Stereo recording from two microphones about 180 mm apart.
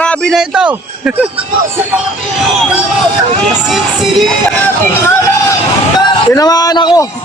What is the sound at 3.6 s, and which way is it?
Speech, centre (ahead or behind).